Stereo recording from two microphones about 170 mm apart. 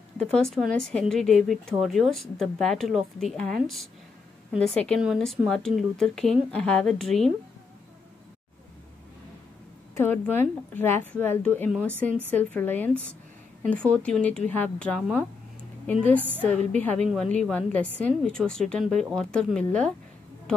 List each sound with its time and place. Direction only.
0.2 s speech: 5° left (ahead or behind)
9.9 s a woman's voice: 10° left (ahead or behind)
15.9 s a woman's voice: 10° left (ahead or behind)
16.2 s a woman's voice: 10° right (ahead or behind)
16.4 s a woman's voice: 10° left (ahead or behind)